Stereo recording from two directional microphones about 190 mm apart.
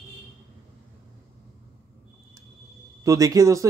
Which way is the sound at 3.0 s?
20° right (ahead or behind).